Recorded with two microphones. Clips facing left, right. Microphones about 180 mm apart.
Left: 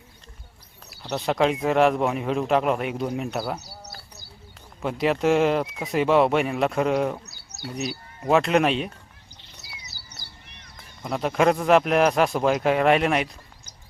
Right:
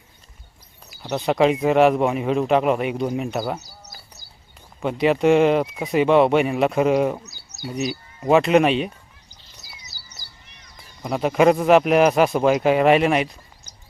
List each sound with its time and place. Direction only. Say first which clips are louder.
1.1 s speech: right 4 dB; centre (ahead or behind)
4.8 s speech: right 4 dB; centre (ahead or behind)
9.9 s a sound: left 1 dB; 60° left (ahead or behind)
11.0 s speech: right 4 dB; 5° right (ahead or behind)